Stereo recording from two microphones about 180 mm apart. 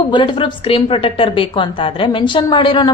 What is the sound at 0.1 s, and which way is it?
Speech, 25° left (ahead or behind).